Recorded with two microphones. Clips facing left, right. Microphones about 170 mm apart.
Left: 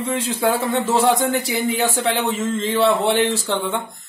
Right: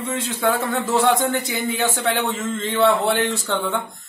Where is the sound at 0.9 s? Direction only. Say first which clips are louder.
Even; 15° left (ahead or behind).